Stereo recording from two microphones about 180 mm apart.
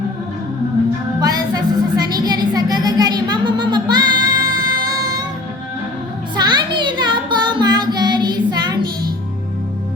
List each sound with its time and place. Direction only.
1.2 s music: 20° right (ahead or behind)
6.3 s child singing: 25° right (ahead or behind)